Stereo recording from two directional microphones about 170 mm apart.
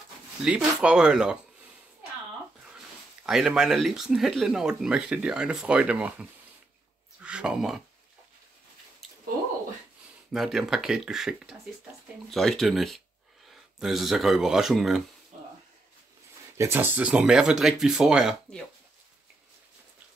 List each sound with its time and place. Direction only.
0.5 s speech: 5° right (ahead or behind)
3.3 s speech: 5° right (ahead or behind)
9.0 s squish: centre (ahead or behind)
10.3 s speech: centre (ahead or behind)
15.3 s a sound: 45° right (ahead or behind)
16.5 s speech: 15° right (ahead or behind)